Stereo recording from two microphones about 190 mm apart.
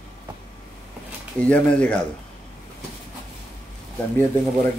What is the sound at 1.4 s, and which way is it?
Speech, 5° left (ahead or behind).